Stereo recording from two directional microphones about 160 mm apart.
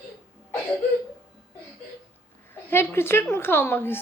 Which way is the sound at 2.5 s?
15° left (ahead or behind).